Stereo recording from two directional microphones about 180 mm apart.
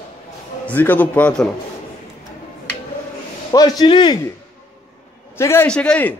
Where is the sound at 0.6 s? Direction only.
10° left (ahead or behind).